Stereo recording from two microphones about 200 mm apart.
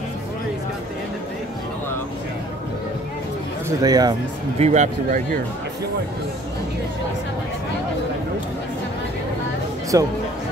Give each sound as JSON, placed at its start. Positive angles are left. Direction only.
{"t": 3.8, "sound": "speech", "side_deg": -20}
{"t": 4.6, "sound": "speech", "side_deg": -35}
{"t": 9.9, "sound": "speech", "side_deg": -15}